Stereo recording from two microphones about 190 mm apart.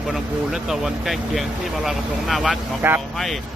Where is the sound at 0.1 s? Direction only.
Centre (ahead or behind).